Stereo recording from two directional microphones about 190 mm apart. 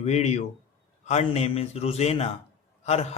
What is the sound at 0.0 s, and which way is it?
A man's voice, 35° left (ahead or behind).